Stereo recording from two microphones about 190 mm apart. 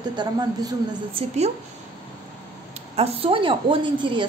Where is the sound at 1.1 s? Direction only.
35° right (ahead or behind).